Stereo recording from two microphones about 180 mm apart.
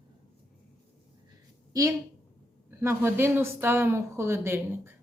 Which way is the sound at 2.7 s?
15° right (ahead or behind).